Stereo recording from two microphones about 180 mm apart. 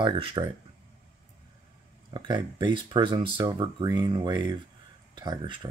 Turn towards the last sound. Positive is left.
turn(degrees=-25)  # may be behind; listen again after turning